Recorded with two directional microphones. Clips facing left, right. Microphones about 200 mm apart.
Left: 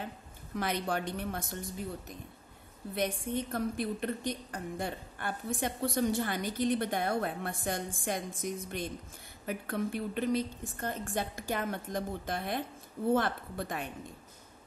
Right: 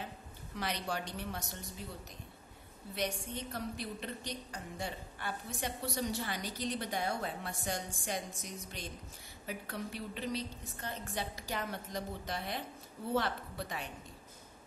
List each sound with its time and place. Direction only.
0.6 s a woman's voice: 50° left (ahead or behind)
2.9 s a woman's voice: 55° left (ahead or behind)